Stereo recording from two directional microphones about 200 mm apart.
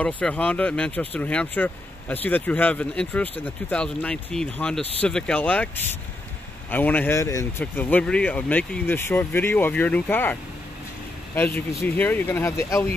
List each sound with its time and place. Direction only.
0.0 s speech: 5° left (ahead or behind)
6.7 s speech: 10° left (ahead or behind)
11.3 s speech: 10° left (ahead or behind)